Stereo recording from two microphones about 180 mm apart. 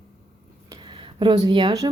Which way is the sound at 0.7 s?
25° right (ahead or behind).